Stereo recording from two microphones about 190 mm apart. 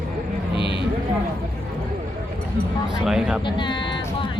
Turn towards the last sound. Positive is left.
turn(degrees=25)  # may be behind; listen again after turning